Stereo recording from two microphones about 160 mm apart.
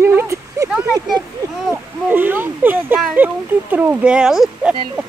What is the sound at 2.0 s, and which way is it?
Speech, 10° right (ahead or behind).